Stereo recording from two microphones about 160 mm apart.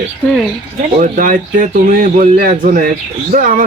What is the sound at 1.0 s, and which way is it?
Speech, 55° right (ahead or behind).